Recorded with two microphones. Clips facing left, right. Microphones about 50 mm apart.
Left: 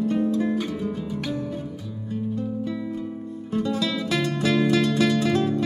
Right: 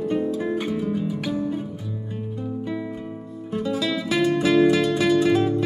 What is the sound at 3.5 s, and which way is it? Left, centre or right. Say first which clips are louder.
Music: even; centre.